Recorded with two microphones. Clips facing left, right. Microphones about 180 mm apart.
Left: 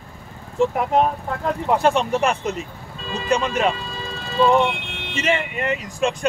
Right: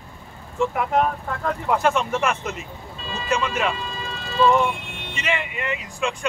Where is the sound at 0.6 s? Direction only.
30° left (ahead or behind).